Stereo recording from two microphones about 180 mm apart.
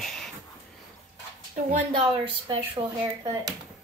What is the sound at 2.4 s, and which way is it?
Speech, 25° right (ahead or behind).